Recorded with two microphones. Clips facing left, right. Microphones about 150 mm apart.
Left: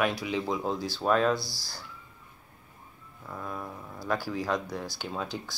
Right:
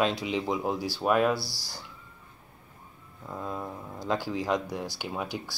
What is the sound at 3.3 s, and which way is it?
Speech, 20° right (ahead or behind).